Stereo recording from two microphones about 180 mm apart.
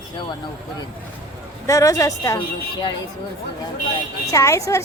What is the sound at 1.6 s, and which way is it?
Speech, 20° left (ahead or behind).